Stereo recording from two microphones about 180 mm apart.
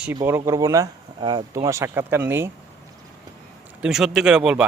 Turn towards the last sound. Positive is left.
turn(degrees=-5)  # may be behind; listen again after turning